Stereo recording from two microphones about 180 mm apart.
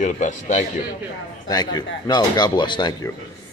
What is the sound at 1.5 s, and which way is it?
Speech, 20° left (ahead or behind).